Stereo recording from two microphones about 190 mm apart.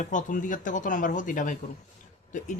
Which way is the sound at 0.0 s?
40° left (ahead or behind).